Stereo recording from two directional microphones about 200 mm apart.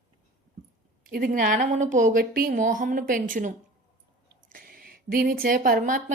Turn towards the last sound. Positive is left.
turn(degrees=-40)  # may be behind; listen again after turning